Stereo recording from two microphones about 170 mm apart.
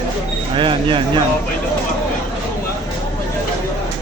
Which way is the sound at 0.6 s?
30° right (ahead or behind).